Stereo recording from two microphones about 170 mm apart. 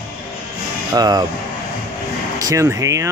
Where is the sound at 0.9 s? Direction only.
25° right (ahead or behind).